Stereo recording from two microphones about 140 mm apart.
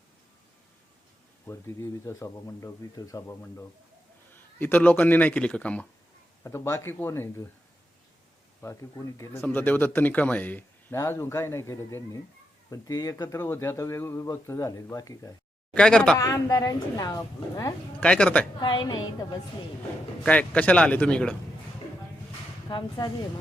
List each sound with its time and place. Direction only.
1.5 s speech: 20° left (ahead or behind)
8.6 s speech: 20° left (ahead or behind)
15.7 s speech: 5° left (ahead or behind)
16.1 s speech: 25° left (ahead or behind)
18.0 s speech: 10° left (ahead or behind)
18.6 s a woman's voice: 35° left (ahead or behind)
20.2 s speech: 10° left (ahead or behind)
22.7 s a woman's voice: 35° left (ahead or behind)